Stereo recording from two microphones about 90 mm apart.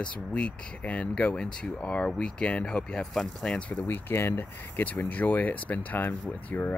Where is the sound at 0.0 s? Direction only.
10° left (ahead or behind).